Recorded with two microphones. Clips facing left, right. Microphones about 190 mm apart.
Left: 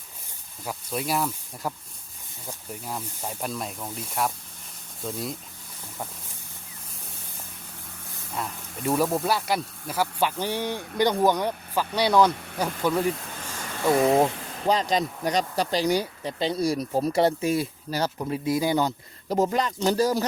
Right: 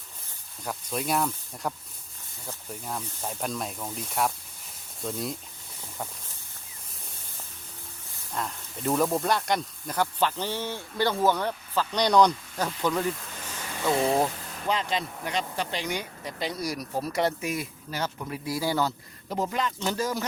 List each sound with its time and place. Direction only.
0.6 s speech: 5° left (ahead or behind)
8.4 s speech: 5° left (ahead or behind)
12.3 s speech: 65° left (ahead or behind)
12.5 s speech: 10° left (ahead or behind)
14.7 s speech: 40° left (ahead or behind)
18.4 s speech: 20° left (ahead or behind)
19.3 s speech: 40° left (ahead or behind)